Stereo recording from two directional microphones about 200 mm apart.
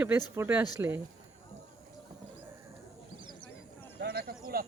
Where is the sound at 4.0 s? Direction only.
50° right (ahead or behind).